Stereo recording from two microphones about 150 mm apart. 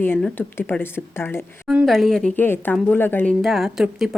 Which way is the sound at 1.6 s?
Centre (ahead or behind).